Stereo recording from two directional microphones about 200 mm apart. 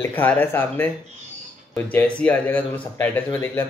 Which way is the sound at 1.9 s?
5° left (ahead or behind).